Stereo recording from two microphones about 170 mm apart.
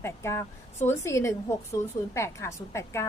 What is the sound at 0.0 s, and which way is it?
A woman's voice, 15° left (ahead or behind).